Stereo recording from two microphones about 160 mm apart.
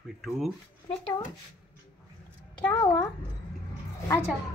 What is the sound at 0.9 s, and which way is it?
Speech, 30° left (ahead or behind).